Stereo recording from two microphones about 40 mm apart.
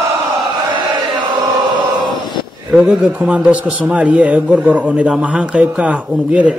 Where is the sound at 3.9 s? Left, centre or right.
Right.